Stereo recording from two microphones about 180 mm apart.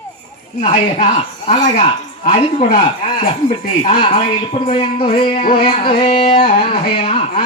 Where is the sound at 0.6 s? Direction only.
30° left (ahead or behind).